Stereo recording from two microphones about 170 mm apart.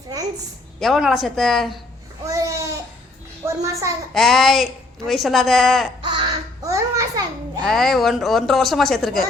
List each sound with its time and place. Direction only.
0.8 s a woman's voice: centre (ahead or behind)
2.2 s babbling: 20° right (ahead or behind)
3.4 s a child's voice: 20° right (ahead or behind)
4.1 s a woman's voice: centre (ahead or behind)
6.0 s babbling: 30° right (ahead or behind)
7.6 s a woman's voice: centre (ahead or behind)